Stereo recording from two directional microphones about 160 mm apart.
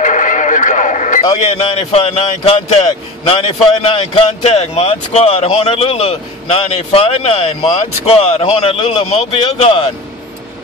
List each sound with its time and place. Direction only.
0.0 s radio: 55° left (ahead or behind)
1.5 s speech: 40° left (ahead or behind)